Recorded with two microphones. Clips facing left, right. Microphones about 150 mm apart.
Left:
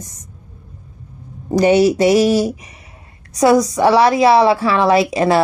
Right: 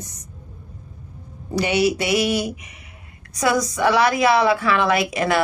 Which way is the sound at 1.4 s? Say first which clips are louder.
Left 8 dB; 40° left (ahead or behind).